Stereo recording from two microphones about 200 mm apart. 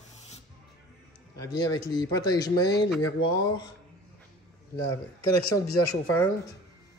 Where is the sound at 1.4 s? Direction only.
20° left (ahead or behind).